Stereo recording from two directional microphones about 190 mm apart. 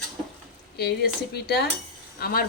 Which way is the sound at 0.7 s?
55° left (ahead or behind).